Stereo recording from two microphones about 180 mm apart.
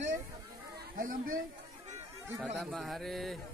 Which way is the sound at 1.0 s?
50° right (ahead or behind).